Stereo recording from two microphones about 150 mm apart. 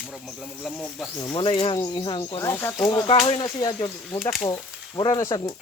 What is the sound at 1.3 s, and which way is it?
Speech, 35° left (ahead or behind).